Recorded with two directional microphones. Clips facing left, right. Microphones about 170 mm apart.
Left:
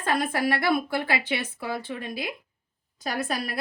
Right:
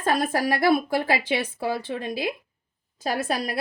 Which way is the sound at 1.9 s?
35° right (ahead or behind).